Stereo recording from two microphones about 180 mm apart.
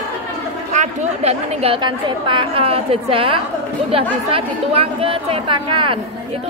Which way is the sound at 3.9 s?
30° right (ahead or behind).